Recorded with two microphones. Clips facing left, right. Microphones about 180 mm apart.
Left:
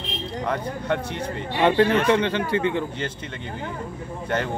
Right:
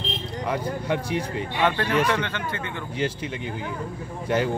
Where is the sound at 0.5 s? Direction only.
10° right (ahead or behind).